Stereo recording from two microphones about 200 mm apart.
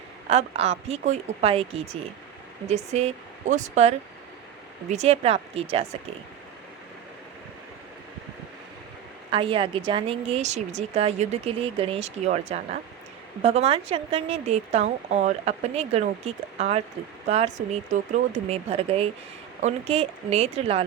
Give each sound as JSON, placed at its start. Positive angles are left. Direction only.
{"t": 0.3, "sound": "speech", "side_deg": -30}
{"t": 9.3, "sound": "speech", "side_deg": -25}